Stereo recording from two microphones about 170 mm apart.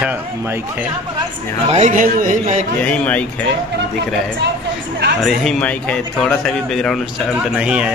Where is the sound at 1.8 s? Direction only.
50° right (ahead or behind).